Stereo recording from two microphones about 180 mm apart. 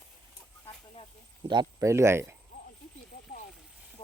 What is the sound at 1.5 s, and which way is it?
Speech, 20° right (ahead or behind).